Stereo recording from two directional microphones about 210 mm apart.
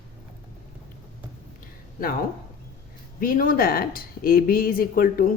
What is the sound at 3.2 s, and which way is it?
Speech, 40° left (ahead or behind).